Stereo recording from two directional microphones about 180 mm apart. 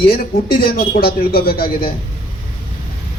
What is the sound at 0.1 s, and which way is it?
A man's voice, 55° left (ahead or behind).